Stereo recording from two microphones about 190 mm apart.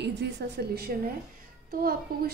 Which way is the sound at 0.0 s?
60° right (ahead or behind).